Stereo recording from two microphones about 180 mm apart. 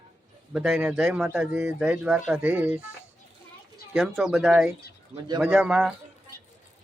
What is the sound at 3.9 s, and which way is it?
A man's voice, 5° right (ahead or behind).